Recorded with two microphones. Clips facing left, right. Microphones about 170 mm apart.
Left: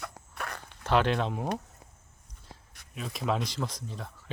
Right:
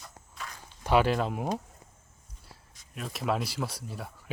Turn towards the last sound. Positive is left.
turn(degrees=-10)  # may be behind; listen again after turning